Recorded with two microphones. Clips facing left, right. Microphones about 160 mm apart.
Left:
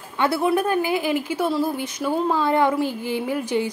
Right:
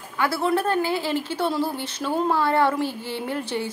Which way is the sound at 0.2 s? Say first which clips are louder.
Left 2 dB; 20° left (ahead or behind).